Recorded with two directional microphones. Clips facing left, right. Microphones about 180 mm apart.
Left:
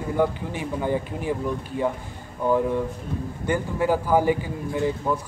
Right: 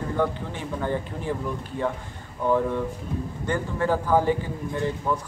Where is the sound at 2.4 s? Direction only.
10° left (ahead or behind).